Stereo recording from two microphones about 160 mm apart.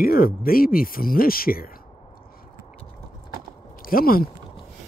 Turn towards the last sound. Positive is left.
turn(degrees=65)  # may be behind; listen again after turning